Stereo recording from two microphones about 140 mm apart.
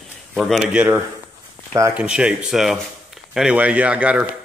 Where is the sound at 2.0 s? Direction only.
10° right (ahead or behind).